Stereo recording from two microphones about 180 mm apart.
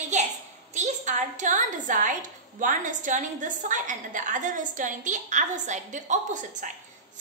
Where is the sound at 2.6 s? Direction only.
45° right (ahead or behind).